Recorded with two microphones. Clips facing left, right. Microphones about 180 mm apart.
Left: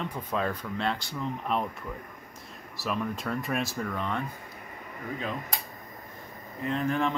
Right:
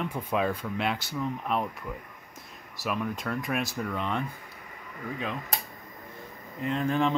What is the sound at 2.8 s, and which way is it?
Speech, centre (ahead or behind).